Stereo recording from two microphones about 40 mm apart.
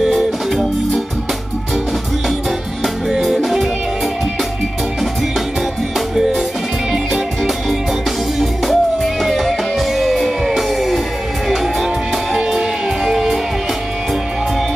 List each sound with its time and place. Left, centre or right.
5.9 s music: centre
8.6 s music: centre
12.4 s music: centre